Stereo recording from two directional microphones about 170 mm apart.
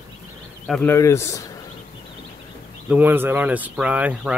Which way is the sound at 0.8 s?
15° left (ahead or behind).